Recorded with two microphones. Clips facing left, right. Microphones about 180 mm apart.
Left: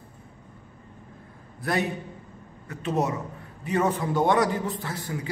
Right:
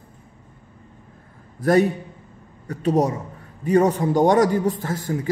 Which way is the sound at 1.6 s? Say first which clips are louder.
Right 10 dB; 40° right (ahead or behind).